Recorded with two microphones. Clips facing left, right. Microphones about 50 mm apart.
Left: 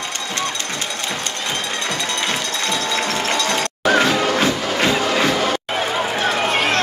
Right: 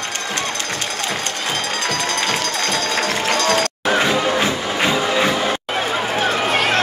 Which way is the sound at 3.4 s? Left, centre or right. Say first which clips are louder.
Right 3 dB; right.